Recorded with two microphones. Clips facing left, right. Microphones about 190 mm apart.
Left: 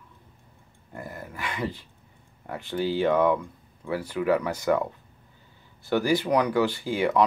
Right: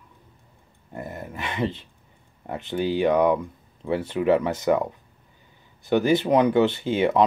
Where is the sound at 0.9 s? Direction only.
20° right (ahead or behind).